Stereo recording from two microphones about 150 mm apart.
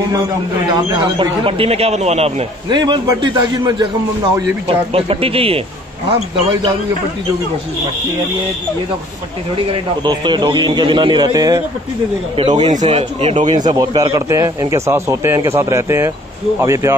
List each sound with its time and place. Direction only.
0.7 s a man's voice: 30° right (ahead or behind)
2.7 s a man's voice: 30° right (ahead or behind)
9.7 s a man's voice: 30° right (ahead or behind)
12.6 s speech: 45° right (ahead or behind)
13.5 s speech: 30° right (ahead or behind)